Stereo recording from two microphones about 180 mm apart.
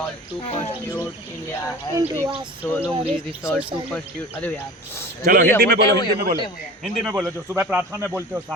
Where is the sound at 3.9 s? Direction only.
10° left (ahead or behind).